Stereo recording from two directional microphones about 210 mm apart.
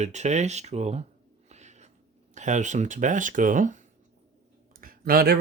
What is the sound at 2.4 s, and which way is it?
Speech, 35° right (ahead or behind).